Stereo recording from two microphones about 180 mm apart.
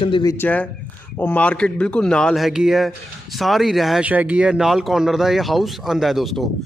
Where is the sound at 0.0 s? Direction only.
25° left (ahead or behind).